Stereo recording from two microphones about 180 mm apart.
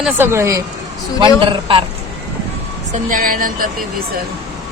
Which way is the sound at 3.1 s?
50° right (ahead or behind).